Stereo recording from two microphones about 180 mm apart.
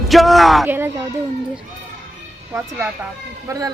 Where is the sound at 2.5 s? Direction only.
5° right (ahead or behind).